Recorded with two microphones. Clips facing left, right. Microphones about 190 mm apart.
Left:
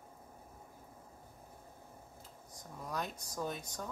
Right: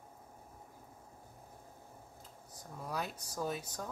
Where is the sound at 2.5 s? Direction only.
5° right (ahead or behind).